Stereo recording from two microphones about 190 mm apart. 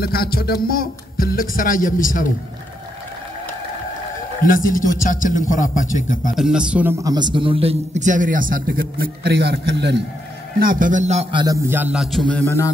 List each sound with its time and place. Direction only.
0.0 s speech: 55° left (ahead or behind)
4.5 s speech: 45° left (ahead or behind)
6.3 s a man's voice: 5° right (ahead or behind); by 9.9 s 60° right (ahead or behind)
10.6 s a man's voice: 45° right (ahead or behind)
11.4 s a man's voice: 15° right (ahead or behind); by 12.7 s 15° left (ahead or behind)